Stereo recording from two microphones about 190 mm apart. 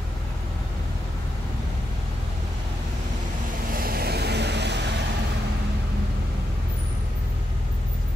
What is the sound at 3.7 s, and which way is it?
Vehicle, 50° right (ahead or behind).